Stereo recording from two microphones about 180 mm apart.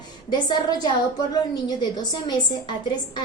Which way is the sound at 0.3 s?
25° left (ahead or behind).